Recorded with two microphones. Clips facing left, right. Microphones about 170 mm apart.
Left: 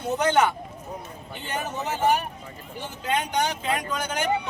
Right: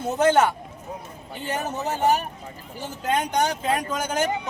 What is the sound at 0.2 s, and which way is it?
Speech, 45° right (ahead or behind).